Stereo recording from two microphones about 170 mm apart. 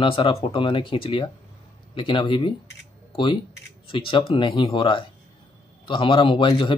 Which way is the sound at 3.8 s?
30° left (ahead or behind).